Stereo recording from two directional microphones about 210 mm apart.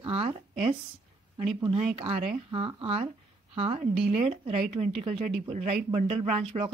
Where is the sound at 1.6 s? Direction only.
30° right (ahead or behind).